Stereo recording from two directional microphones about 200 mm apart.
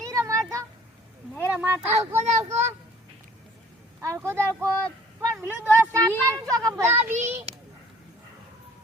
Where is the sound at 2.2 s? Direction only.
35° right (ahead or behind).